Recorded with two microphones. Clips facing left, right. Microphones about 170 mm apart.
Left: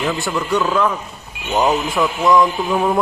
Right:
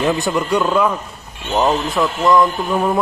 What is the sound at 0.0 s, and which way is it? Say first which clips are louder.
Speech: right 3 dB; 20° right (ahead or behind).